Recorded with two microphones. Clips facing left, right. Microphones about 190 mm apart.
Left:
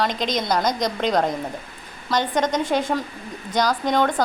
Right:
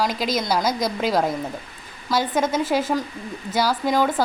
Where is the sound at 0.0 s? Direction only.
5° right (ahead or behind).